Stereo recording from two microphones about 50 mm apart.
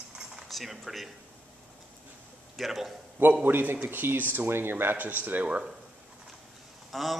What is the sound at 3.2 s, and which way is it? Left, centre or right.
Speech, right.